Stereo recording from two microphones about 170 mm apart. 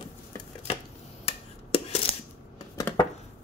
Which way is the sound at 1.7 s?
35° left (ahead or behind).